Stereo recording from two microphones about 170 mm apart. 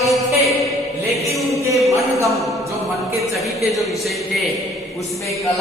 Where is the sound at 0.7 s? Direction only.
Centre (ahead or behind).